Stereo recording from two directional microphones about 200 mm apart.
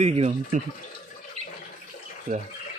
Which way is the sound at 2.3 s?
40° right (ahead or behind).